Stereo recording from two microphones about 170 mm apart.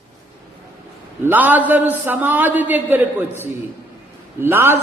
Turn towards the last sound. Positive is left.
turn(degrees=-15)  # may be behind; listen again after turning